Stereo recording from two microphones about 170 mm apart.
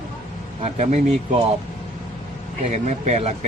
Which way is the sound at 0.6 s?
40° right (ahead or behind).